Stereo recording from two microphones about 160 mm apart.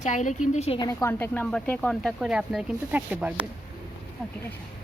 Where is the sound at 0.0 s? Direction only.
50° left (ahead or behind).